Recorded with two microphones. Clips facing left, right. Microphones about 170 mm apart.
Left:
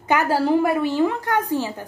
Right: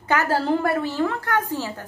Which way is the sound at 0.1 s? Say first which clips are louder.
Left 3 dB; 10° left (ahead or behind).